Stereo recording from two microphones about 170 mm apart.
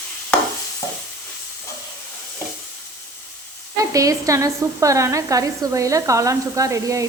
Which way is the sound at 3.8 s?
20° right (ahead or behind).